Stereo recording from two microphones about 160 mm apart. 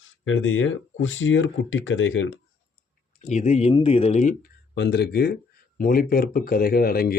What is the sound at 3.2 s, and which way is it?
Speech, 45° left (ahead or behind).